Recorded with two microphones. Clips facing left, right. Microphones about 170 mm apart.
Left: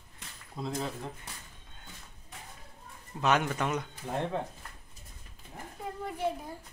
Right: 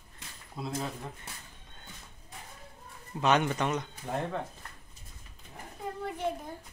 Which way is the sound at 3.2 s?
Centre (ahead or behind).